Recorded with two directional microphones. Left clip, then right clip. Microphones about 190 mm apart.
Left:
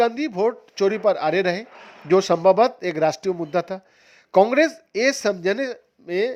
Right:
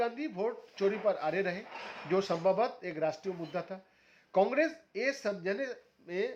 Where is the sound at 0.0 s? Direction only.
50° left (ahead or behind).